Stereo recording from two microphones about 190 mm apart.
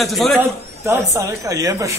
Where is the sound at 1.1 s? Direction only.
15° right (ahead or behind).